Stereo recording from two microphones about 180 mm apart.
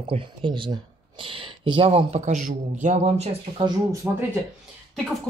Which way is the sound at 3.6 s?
15° right (ahead or behind).